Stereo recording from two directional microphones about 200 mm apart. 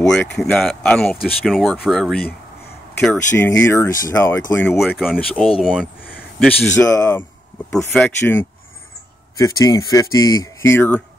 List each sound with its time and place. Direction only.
0.4 s speech: centre (ahead or behind)
6.9 s speech: 10° left (ahead or behind)
7.7 s speech: centre (ahead or behind)